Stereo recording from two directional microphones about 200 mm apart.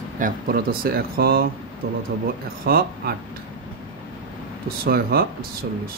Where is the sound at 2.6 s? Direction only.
50° right (ahead or behind).